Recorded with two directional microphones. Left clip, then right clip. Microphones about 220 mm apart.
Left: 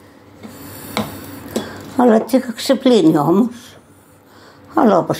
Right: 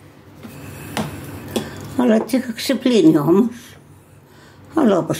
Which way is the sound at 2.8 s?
20° right (ahead or behind).